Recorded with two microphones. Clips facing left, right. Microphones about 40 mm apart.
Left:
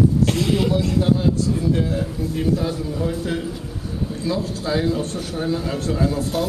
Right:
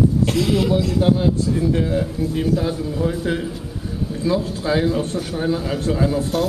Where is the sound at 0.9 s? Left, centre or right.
Centre.